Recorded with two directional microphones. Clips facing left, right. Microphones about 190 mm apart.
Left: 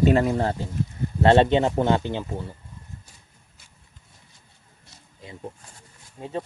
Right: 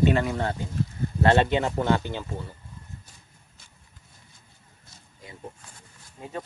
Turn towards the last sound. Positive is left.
turn(degrees=25)  # may be behind; listen again after turning